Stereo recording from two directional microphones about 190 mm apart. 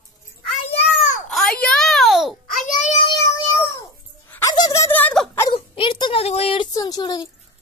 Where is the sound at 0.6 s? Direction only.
35° left (ahead or behind).